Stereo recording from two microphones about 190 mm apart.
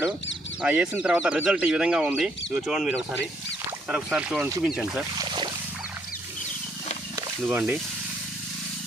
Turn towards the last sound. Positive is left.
turn(degrees=-10)  # may be behind; listen again after turning